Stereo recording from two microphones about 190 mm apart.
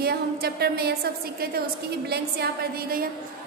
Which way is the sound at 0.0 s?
55° right (ahead or behind).